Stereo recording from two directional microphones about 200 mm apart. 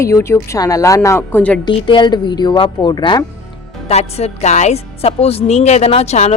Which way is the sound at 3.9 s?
30° left (ahead or behind).